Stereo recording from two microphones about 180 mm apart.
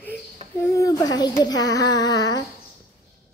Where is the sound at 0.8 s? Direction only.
20° left (ahead or behind).